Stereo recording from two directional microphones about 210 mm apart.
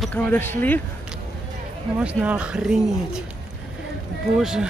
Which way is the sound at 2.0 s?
5° right (ahead or behind).